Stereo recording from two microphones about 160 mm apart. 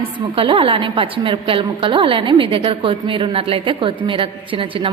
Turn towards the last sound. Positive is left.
turn(degrees=-35)  # may be behind; listen again after turning